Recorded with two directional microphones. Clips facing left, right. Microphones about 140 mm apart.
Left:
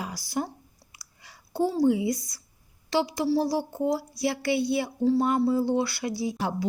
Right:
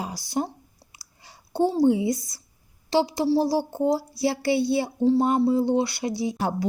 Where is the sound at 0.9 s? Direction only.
25° right (ahead or behind).